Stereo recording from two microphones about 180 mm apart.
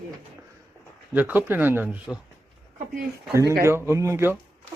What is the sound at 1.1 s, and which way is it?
Speech, 10° right (ahead or behind).